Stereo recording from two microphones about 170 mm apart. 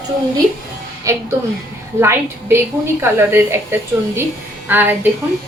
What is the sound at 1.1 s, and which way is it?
A woman's voice, 20° right (ahead or behind).